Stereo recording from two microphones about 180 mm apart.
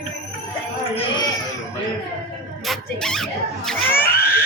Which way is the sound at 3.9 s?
55° left (ahead or behind).